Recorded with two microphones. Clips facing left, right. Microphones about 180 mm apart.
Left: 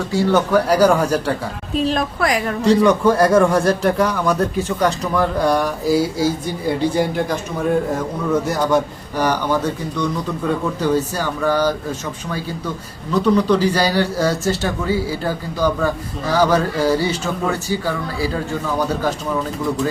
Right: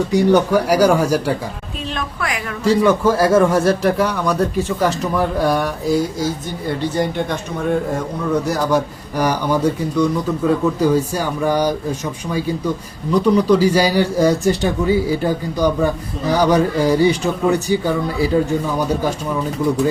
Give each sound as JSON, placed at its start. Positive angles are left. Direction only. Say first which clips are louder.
{"t": 0.1, "sound": "a man's voice", "louder": "right 1 dB", "side_deg": -15}
{"t": 1.8, "sound": "speech", "louder": "left 6 dB", "side_deg": 35}
{"t": 2.6, "sound": "speech", "louder": "even", "side_deg": -5}
{"t": 9.1, "sound": "a man's voice", "louder": "right 1 dB", "side_deg": -10}